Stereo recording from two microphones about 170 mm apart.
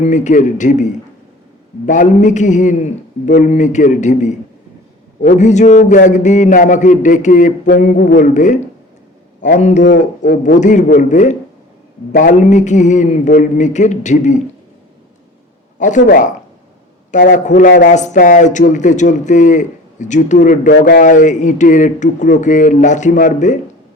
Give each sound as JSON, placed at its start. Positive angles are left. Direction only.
{"t": 0.0, "sound": "speech", "side_deg": 45}
{"t": 15.8, "sound": "speech", "side_deg": 45}
{"t": 17.3, "sound": "speech", "side_deg": 45}